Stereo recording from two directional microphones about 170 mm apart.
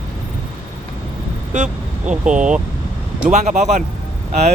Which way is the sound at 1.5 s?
45° right (ahead or behind).